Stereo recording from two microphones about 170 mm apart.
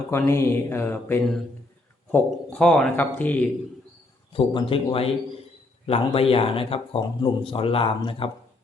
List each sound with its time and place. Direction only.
0.1 s speech: 15° left (ahead or behind)
4.3 s a man's voice: 30° left (ahead or behind)